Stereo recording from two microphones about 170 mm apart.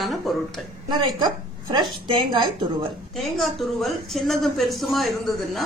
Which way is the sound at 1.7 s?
25° right (ahead or behind).